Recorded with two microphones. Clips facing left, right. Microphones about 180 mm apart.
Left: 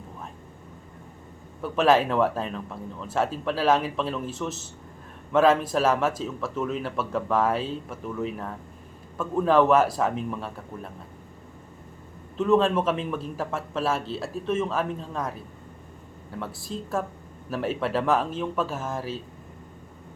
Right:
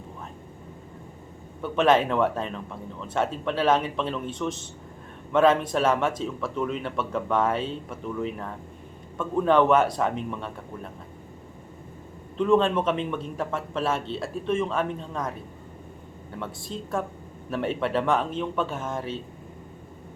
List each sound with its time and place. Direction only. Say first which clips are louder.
1.6 s speech: even; 5° left (ahead or behind)
12.4 s speech: even; 5° left (ahead or behind)
16.4 s speech: left 1 dB; centre (ahead or behind)